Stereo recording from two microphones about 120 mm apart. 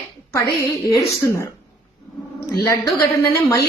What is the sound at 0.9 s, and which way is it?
Speech, 25° left (ahead or behind).